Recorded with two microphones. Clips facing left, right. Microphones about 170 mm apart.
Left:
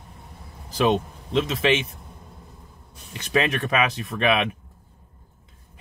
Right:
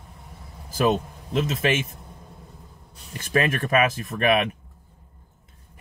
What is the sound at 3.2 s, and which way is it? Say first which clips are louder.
Speech: even; 45° right (ahead or behind).